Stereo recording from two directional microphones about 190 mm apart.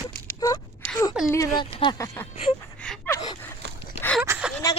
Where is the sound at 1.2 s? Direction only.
15° left (ahead or behind).